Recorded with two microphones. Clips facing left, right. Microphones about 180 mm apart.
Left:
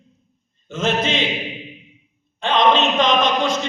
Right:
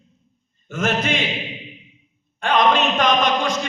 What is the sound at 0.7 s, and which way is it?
Speech, 25° left (ahead or behind).